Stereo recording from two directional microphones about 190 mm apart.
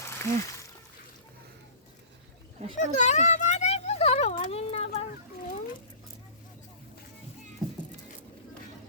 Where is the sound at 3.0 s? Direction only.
40° left (ahead or behind).